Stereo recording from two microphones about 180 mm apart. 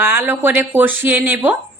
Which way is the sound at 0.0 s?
10° right (ahead or behind).